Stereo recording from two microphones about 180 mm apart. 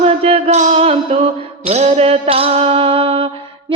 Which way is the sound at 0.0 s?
35° right (ahead or behind).